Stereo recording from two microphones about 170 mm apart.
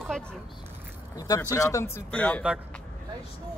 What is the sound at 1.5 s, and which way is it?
Speech, 15° left (ahead or behind).